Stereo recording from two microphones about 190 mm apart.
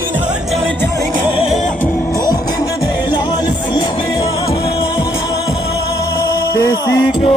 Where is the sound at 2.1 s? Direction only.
20° left (ahead or behind).